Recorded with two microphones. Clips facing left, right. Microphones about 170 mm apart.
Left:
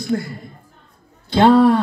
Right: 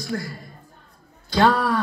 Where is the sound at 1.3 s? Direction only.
25° left (ahead or behind).